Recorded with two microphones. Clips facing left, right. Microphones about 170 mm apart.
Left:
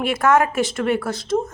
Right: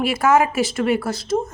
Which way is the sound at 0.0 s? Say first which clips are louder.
Right 1 dB; 5° right (ahead or behind).